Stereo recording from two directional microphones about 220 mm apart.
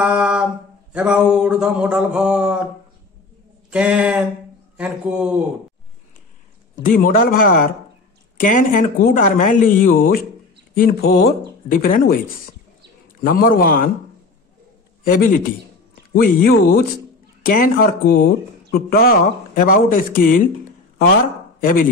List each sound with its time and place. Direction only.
0.0 s a sound: 5° right (ahead or behind)
3.7 s a sound: 5° right (ahead or behind)
6.7 s speech: 40° left (ahead or behind)
13.2 s speech: 40° left (ahead or behind)
15.1 s speech: 40° left (ahead or behind)
21.5 s chopping: 40° left (ahead or behind)